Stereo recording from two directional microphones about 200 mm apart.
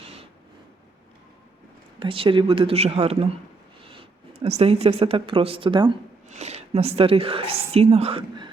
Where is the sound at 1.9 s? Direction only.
25° right (ahead or behind).